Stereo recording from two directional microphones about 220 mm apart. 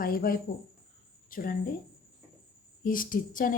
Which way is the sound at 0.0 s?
40° left (ahead or behind).